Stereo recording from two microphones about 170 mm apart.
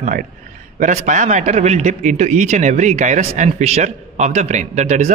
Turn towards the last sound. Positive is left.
turn(degrees=-45)  # may be behind; listen again after turning